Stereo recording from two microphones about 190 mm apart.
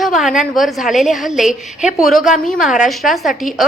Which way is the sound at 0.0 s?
Centre (ahead or behind).